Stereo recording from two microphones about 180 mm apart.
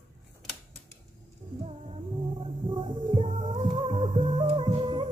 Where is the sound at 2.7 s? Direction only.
25° right (ahead or behind).